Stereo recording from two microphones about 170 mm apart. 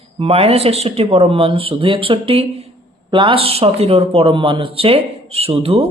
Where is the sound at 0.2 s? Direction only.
35° right (ahead or behind).